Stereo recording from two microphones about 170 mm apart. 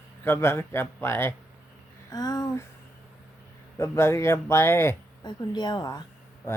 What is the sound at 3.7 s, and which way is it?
Speech, 15° left (ahead or behind).